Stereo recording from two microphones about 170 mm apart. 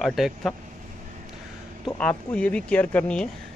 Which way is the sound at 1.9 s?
5° left (ahead or behind).